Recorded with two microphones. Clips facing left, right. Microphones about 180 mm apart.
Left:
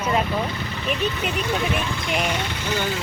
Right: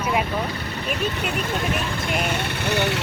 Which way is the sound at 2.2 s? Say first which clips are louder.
Right 1 dB; 60° right (ahead or behind).